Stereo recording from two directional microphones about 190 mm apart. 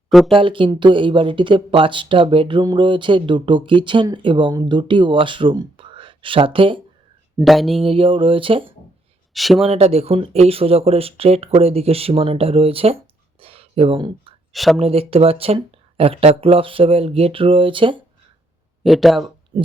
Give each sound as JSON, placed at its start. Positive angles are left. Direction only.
{"t": 0.1, "sound": "speech", "side_deg": 0}
{"t": 0.3, "sound": "speech", "side_deg": -25}
{"t": 7.3, "sound": "speech", "side_deg": 0}
{"t": 7.9, "sound": "speech", "side_deg": -25}
{"t": 9.3, "sound": "speech", "side_deg": 0}
{"t": 9.6, "sound": "speech", "side_deg": -35}
{"t": 13.4, "sound": "a sound", "side_deg": -30}
{"t": 14.5, "sound": "speech", "side_deg": 0}
{"t": 14.8, "sound": "speech", "side_deg": -30}
{"t": 18.8, "sound": "speech", "side_deg": 0}
{"t": 19.5, "sound": "a sound", "side_deg": -25}